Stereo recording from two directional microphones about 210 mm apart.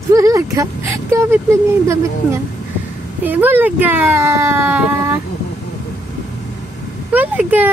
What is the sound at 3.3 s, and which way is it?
Speech, 10° right (ahead or behind).